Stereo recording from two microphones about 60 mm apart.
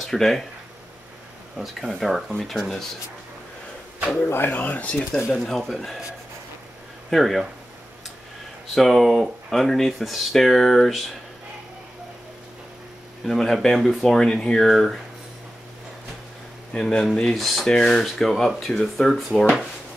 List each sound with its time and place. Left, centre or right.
0.0 s speech: centre
1.6 s speech: centre
4.3 s speech: left
5.3 s speech: centre
7.1 s speech: centre
8.7 s speech: centre
13.2 s speech: centre
14.7 s speech: centre
16.7 s speech: centre